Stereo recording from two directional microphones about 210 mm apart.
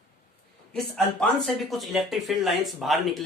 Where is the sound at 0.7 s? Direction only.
Centre (ahead or behind).